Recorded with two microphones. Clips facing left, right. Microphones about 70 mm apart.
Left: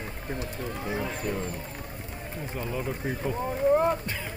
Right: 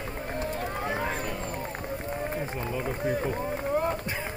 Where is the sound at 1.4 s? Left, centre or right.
Right.